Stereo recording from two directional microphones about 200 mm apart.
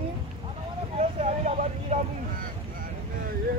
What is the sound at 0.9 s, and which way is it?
Vehicle, 35° right (ahead or behind).